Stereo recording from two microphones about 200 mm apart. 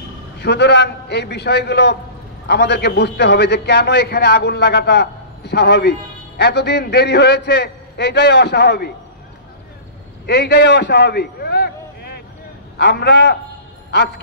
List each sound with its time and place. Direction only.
0.4 s a man's voice: 55° left (ahead or behind)
10.2 s a man's voice: 55° left (ahead or behind)